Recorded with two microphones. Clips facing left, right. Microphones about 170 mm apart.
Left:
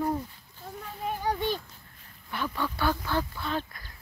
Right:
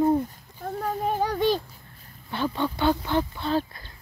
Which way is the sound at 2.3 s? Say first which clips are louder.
Right 5 dB; 25° right (ahead or behind).